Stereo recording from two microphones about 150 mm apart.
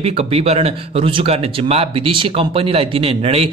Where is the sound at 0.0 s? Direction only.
40° right (ahead or behind).